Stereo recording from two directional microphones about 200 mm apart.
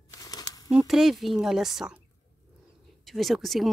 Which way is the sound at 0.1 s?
20° left (ahead or behind).